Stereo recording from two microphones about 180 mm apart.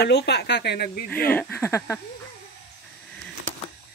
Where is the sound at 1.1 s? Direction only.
10° left (ahead or behind).